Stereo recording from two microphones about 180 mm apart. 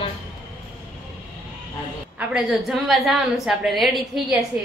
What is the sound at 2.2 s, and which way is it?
A woman's voice, 5° right (ahead or behind).